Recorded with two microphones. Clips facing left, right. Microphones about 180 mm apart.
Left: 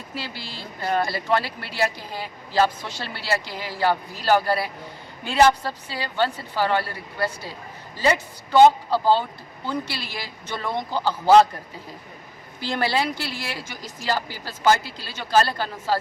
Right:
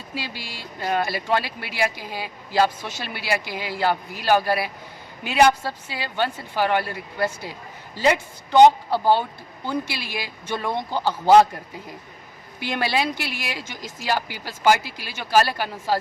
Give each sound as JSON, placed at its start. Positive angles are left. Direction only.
{"t": 0.1, "sound": "speech", "side_deg": -15}
{"t": 12.5, "sound": "speech", "side_deg": -15}